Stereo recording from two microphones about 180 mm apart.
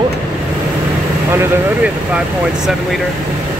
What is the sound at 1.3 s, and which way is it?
Speech, 15° right (ahead or behind).